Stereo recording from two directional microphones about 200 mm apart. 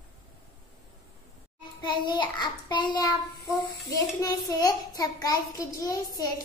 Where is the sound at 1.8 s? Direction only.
20° left (ahead or behind).